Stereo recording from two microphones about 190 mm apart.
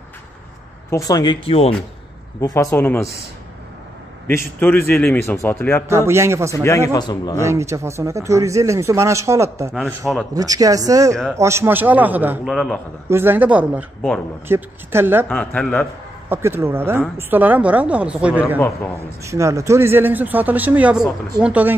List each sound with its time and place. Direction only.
0.8 s speech: 15° left (ahead or behind)
2.4 s a man's voice: 15° left (ahead or behind)
4.3 s a man's voice: 10° left (ahead or behind)
5.9 s speech: 15° right (ahead or behind)
6.9 s speech: 20° left (ahead or behind)
7.4 s speech: 15° right (ahead or behind)
9.8 s a man's voice: centre (ahead or behind)
10.3 s speech: 20° right (ahead or behind); by 12.8 s centre (ahead or behind)
13.1 s speech: 10° right (ahead or behind)
15.2 s a man's voice: 5° left (ahead or behind)
16.3 s speech: 10° right (ahead or behind)